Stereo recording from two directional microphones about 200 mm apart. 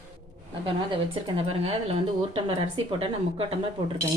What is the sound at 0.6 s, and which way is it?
Speech, 25° right (ahead or behind).